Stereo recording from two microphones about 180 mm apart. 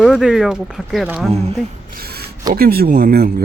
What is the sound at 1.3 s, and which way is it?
Speech, 35° right (ahead or behind).